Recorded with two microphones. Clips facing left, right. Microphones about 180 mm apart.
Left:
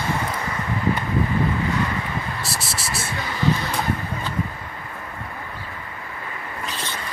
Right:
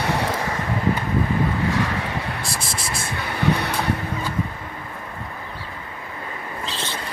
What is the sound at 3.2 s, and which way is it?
Vehicle, 60° right (ahead or behind).